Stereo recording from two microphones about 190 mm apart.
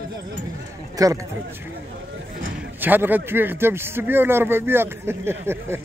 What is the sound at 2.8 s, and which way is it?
A man's voice, 10° right (ahead or behind).